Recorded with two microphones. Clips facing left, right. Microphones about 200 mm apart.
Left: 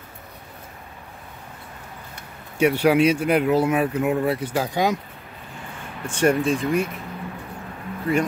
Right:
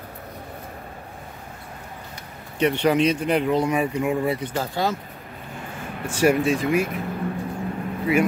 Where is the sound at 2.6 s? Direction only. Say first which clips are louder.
Left 2 dB; 10° left (ahead or behind).